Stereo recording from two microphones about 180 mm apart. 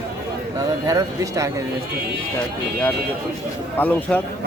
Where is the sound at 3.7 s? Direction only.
10° left (ahead or behind).